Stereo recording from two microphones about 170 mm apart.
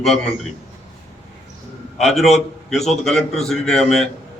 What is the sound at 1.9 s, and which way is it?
A man's voice, centre (ahead or behind).